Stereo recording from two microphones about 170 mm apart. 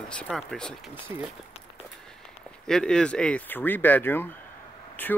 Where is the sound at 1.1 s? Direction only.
15° right (ahead or behind).